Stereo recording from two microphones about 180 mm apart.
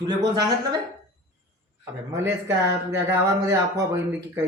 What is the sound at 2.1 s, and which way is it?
Speech, 15° right (ahead or behind).